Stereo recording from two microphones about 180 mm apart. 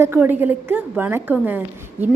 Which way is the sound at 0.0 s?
10° right (ahead or behind).